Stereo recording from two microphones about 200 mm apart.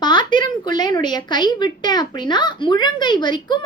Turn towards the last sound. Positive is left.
turn(degrees=20)  # may be behind; listen again after turning